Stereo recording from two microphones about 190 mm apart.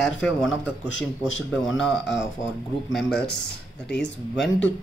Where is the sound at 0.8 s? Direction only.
85° left.